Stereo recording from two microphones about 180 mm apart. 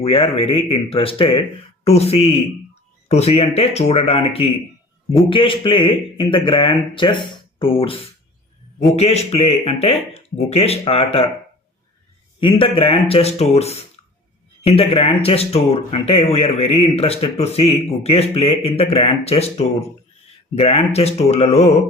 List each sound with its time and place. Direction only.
0.0 s speech: 35° left (ahead or behind)
12.4 s speech: 30° left (ahead or behind)